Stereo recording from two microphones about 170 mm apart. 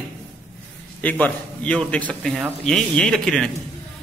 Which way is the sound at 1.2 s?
5° left (ahead or behind).